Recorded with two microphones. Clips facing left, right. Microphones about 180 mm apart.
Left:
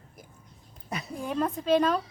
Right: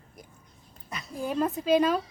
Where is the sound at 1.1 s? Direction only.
5° right (ahead or behind).